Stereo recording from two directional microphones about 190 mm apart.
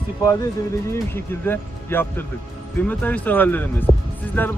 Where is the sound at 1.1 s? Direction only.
10° left (ahead or behind).